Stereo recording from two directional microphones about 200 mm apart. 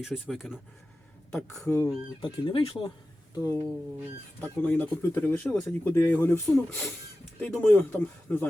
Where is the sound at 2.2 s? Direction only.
25° left (ahead or behind).